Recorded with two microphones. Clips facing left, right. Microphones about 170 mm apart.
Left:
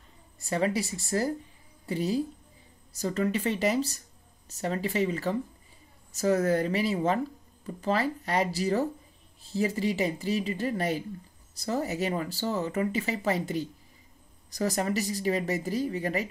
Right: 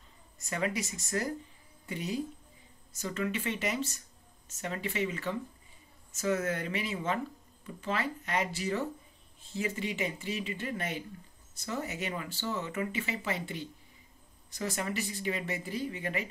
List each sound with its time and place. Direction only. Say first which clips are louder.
0.4 s speech: left 6 dB; 30° left (ahead or behind)